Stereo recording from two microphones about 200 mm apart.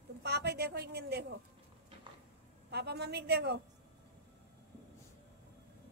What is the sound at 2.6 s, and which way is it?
Speech, 55° right (ahead or behind).